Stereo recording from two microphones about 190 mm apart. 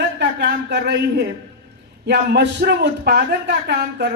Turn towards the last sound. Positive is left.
turn(degrees=-65)  # may be behind; listen again after turning